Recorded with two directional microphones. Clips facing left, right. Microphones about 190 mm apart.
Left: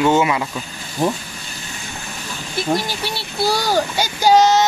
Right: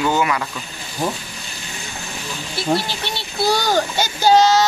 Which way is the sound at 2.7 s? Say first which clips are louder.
Left 1 dB; 10° left (ahead or behind).